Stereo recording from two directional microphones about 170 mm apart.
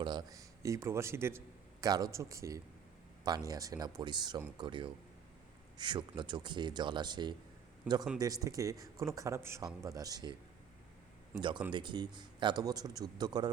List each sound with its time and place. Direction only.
0.0 s a man's voice: 25° right (ahead or behind)
7.9 s a man's voice: 10° right (ahead or behind)
8.2 s a man's voice: 20° right (ahead or behind)
11.3 s a man's voice: 25° right (ahead or behind)